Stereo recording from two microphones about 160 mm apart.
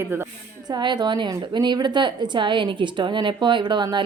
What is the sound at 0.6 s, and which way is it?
A woman's voice, 25° right (ahead or behind).